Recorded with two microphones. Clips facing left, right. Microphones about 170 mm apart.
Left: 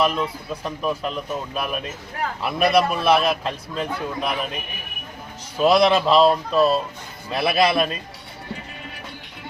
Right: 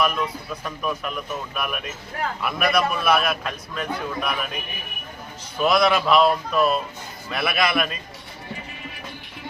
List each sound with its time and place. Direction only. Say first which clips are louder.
0.0 s a man's voice: left 2 dB; 25° left (ahead or behind)
5.5 s a man's voice: left 3 dB; 30° left (ahead or behind)